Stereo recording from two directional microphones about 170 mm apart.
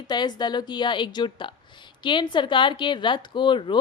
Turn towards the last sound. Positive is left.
turn(degrees=25)  # may be behind; listen again after turning